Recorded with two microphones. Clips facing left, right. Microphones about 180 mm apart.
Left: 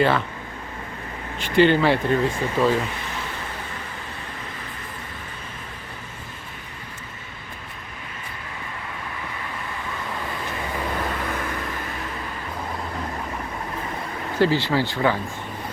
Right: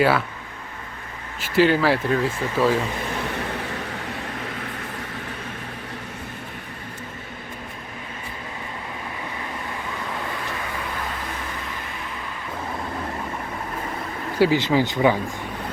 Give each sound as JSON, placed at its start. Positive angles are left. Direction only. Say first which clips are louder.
{"t": 0.0, "sound": "speech", "louder": "right 1 dB", "side_deg": -5}
{"t": 1.4, "sound": "speech", "louder": "left 1 dB", "side_deg": -5}
{"t": 14.3, "sound": "speech", "louder": "right 2 dB", "side_deg": -15}